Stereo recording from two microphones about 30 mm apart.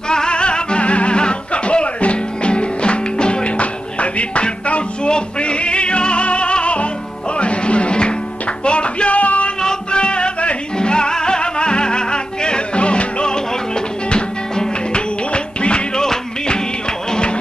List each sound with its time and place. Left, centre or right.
0.1 s music: left
4.0 s music: left
9.9 s music: left
15.3 s music: left
16.0 s music: left